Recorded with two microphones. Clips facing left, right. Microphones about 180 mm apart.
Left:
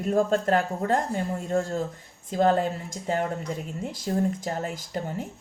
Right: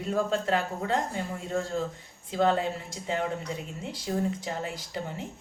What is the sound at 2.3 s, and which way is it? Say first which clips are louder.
Speech: left 3 dB; 45° left (ahead or behind).